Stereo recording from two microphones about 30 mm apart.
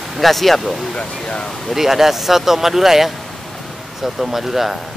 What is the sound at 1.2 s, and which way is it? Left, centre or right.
Speech, left.